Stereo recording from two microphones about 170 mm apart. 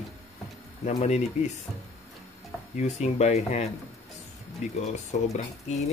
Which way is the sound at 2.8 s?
45° left (ahead or behind).